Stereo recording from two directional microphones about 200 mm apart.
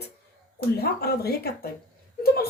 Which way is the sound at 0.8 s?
50° left (ahead or behind).